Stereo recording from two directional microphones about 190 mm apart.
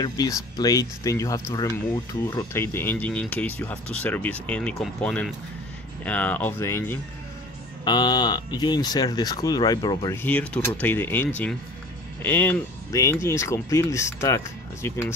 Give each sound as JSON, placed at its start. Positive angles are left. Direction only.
{"t": 0.0, "sound": "speech", "side_deg": 20}
{"t": 7.8, "sound": "speech", "side_deg": 20}